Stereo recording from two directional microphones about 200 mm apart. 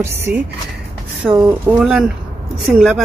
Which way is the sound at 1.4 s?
5° right (ahead or behind).